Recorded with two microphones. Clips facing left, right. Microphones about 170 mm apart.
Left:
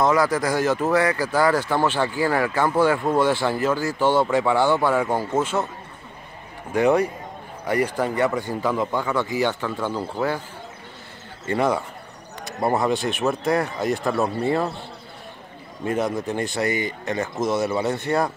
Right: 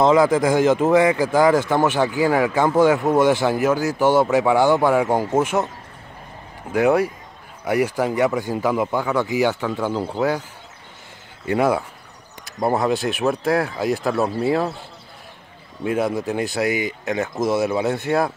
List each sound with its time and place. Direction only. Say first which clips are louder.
0.0 s speech: right 4 dB; 20° right (ahead or behind)
6.7 s speech: right 1 dB; 5° right (ahead or behind)
11.4 s speech: right 3 dB; 5° right (ahead or behind)
15.8 s speech: right 2 dB; 5° right (ahead or behind)